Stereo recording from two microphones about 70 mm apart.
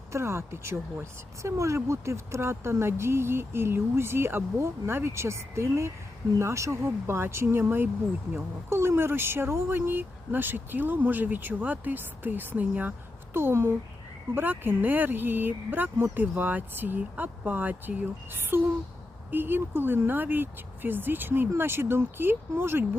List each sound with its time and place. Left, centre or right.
0.1 s a woman's voice: right
13.3 s a woman's voice: right